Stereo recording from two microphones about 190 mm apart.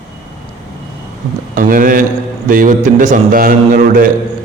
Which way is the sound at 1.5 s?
45° right (ahead or behind).